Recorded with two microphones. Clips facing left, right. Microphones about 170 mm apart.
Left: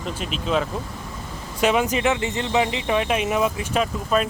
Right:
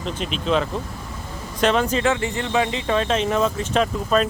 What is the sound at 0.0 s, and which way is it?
Speech, 5° left (ahead or behind).